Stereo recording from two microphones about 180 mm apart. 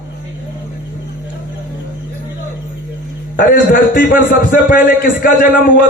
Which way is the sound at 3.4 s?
50° left (ahead or behind).